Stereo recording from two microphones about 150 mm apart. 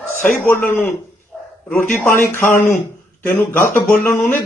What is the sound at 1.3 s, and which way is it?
Bow-wow, 10° left (ahead or behind).